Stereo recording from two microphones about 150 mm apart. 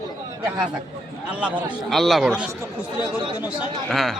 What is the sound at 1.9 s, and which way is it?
Speech, centre (ahead or behind).